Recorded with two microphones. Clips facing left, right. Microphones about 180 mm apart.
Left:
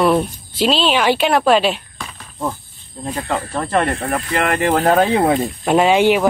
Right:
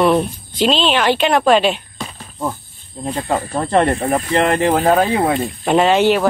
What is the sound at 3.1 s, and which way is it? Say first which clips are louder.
Speech: right 2 dB; 15° right (ahead or behind).